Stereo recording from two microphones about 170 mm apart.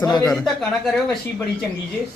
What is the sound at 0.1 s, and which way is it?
Speech, 25° left (ahead or behind).